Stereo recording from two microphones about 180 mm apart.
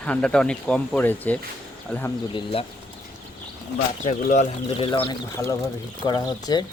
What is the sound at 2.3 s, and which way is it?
Speech, 30° left (ahead or behind).